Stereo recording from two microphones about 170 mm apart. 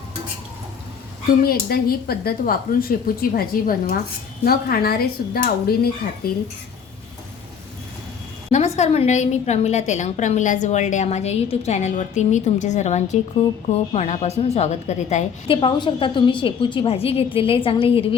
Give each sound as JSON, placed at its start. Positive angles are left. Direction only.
{"t": 1.5, "sound": "speech", "side_deg": 60}
{"t": 8.5, "sound": "a woman's voice", "side_deg": 40}